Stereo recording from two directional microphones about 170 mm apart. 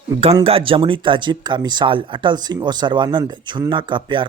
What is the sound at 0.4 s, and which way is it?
Speech, 30° right (ahead or behind).